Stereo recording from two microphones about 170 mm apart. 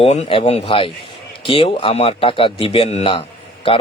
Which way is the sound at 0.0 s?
40° left (ahead or behind).